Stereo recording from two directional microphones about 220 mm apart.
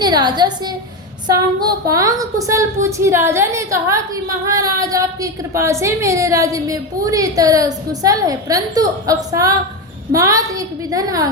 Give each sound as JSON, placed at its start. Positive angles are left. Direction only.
{"t": 0.0, "sound": "a woman's voice", "side_deg": -20}